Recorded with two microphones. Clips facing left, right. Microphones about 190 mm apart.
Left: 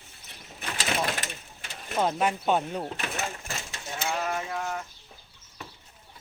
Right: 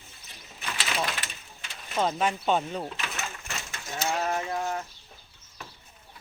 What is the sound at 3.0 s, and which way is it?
Speech, 35° left (ahead or behind).